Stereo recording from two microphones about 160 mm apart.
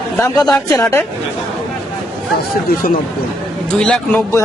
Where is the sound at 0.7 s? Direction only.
20° left (ahead or behind).